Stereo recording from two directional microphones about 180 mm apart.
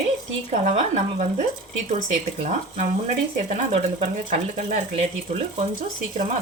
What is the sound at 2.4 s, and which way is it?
Speech, 45° right (ahead or behind).